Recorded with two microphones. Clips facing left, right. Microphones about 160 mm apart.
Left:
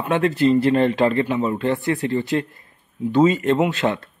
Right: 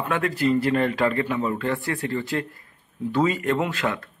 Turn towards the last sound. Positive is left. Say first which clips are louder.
# left 5 dB
turn(degrees=25)  # may be behind; listen again after turning